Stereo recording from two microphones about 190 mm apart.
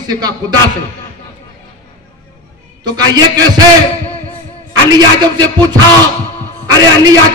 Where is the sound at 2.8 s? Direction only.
20° right (ahead or behind).